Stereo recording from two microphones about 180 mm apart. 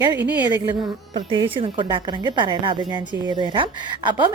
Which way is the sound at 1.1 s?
30° right (ahead or behind).